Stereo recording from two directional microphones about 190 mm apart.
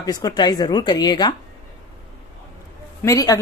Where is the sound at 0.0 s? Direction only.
20° left (ahead or behind).